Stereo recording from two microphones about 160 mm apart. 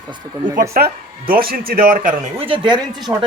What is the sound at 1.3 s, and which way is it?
Speech, 65° right (ahead or behind).